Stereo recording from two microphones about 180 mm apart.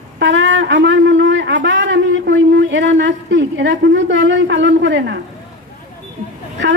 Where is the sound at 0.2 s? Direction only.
90° right.